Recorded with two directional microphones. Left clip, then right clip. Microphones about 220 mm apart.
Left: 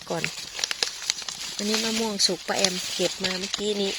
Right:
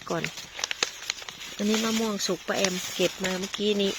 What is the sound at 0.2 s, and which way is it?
Crumpling, 55° left (ahead or behind).